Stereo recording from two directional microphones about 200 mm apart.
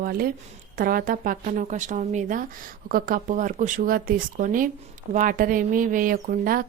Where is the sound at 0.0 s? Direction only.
45° right (ahead or behind).